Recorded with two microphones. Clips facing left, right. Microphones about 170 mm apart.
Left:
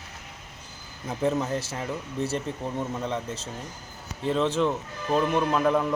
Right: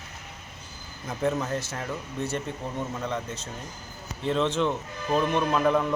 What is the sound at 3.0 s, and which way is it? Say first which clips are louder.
Speech: left 1 dB; 30° left (ahead or behind).